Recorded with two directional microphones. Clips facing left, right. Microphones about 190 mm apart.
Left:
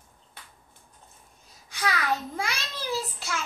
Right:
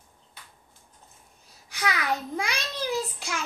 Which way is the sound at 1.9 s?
15° right (ahead or behind).